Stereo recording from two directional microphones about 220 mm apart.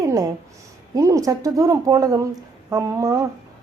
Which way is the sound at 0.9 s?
15° right (ahead or behind).